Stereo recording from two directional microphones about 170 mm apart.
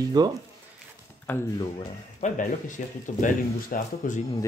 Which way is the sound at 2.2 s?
50° left (ahead or behind).